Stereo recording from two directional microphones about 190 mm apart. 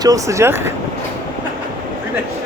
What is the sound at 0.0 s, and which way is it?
Speech, 15° right (ahead or behind).